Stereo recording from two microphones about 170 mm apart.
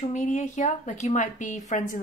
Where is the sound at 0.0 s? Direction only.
45° left (ahead or behind).